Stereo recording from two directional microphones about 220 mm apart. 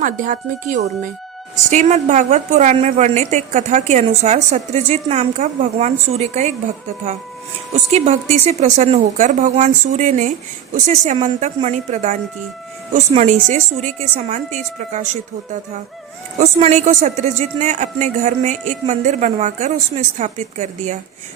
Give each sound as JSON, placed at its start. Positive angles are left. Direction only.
{"t": 0.0, "sound": "speech", "side_deg": -35}
{"t": 7.7, "sound": "speech", "side_deg": -30}
{"t": 16.4, "sound": "speech", "side_deg": -30}